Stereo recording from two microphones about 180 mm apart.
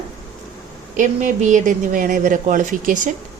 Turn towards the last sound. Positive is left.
turn(degrees=-45)  # may be behind; listen again after turning